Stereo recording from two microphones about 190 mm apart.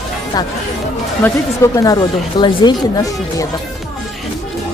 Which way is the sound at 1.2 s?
15° left (ahead or behind).